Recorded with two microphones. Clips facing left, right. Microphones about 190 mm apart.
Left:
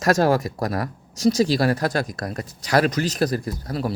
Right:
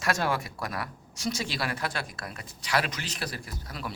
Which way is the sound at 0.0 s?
40° left (ahead or behind).